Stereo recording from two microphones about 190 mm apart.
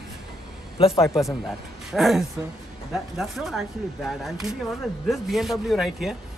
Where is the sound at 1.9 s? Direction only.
Centre (ahead or behind).